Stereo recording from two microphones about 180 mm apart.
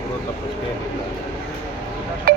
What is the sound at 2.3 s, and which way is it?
Music, 60° right (ahead or behind).